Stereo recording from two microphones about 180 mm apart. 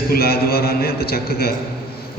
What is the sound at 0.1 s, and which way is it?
A man's voice, 60° left (ahead or behind).